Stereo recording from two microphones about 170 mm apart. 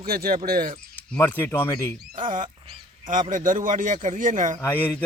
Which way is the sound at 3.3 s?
50° right (ahead or behind).